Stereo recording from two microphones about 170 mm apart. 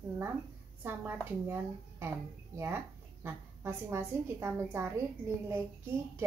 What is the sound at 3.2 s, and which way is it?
A woman's voice, 15° right (ahead or behind).